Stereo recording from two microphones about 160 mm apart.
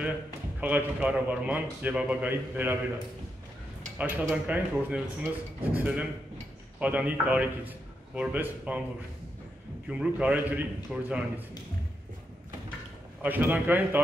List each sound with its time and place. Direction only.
0.6 s a man's voice: 10° right (ahead or behind)
4.0 s a man's voice: 10° right (ahead or behind)
9.8 s a man's voice: 5° right (ahead or behind)
13.2 s a man's voice: 10° right (ahead or behind)